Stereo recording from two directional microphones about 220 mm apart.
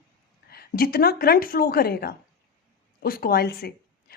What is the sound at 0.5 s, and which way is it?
Speech, 45° left (ahead or behind).